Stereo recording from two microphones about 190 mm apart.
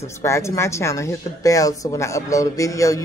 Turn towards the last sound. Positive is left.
turn(degrees=15)  # may be behind; listen again after turning